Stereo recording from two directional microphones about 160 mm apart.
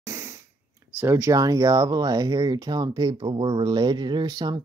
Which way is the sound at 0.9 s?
15° right (ahead or behind).